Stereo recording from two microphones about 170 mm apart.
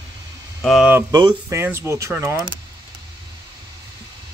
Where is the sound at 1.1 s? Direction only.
25° right (ahead or behind).